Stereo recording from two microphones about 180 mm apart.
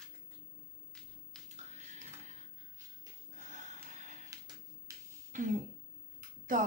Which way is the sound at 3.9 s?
40° right (ahead or behind).